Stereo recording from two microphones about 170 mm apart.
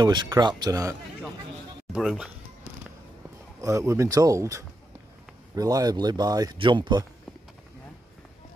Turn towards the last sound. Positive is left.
turn(degrees=-25)  # may be behind; listen again after turning